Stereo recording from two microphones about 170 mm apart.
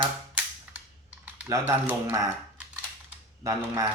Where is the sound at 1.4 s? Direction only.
15° right (ahead or behind).